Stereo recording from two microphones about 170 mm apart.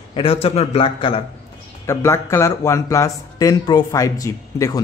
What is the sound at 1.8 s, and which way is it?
A man's voice, 15° left (ahead or behind).